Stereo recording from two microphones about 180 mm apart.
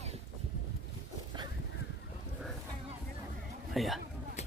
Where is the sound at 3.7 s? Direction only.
Centre (ahead or behind).